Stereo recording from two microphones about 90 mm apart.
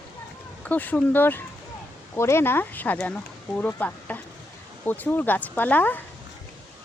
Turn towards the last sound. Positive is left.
turn(degrees=20)  # may be behind; listen again after turning